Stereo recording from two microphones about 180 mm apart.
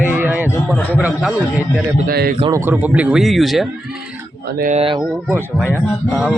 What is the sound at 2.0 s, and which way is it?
Speech, 55° right (ahead or behind).